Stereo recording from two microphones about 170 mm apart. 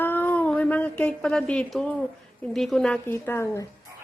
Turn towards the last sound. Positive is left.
turn(degrees=15)  # may be behind; listen again after turning